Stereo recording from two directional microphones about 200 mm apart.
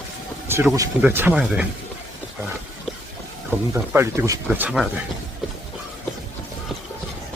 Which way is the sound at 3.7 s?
15° right (ahead or behind).